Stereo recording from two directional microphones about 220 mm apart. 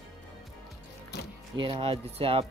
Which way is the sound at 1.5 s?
25° right (ahead or behind).